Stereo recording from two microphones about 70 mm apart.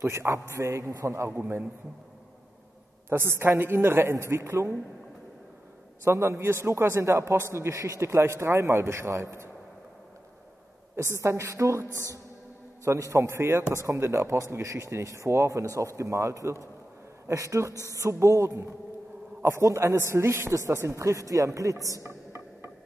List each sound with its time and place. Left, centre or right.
0.0 s speech: right
1.3 s a man's voice: right
3.1 s a man's voice: right
6.0 s a man's voice: right
11.0 s speech: right
21.9 s a sound: right